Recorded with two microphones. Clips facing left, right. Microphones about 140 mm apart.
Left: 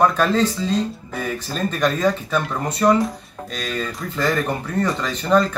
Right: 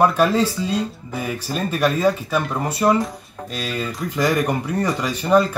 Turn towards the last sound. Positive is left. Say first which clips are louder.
# right 1 dB
turn(degrees=-10)  # may be behind; listen again after turning